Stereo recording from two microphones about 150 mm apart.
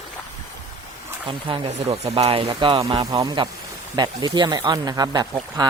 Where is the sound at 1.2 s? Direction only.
40° right (ahead or behind).